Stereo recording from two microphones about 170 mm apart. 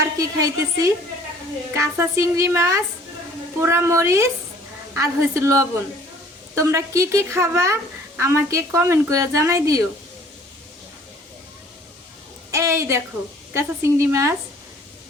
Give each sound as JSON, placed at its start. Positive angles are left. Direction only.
{"t": 0.2, "sound": "a woman's voice", "side_deg": -20}
{"t": 12.5, "sound": "a woman's voice", "side_deg": -15}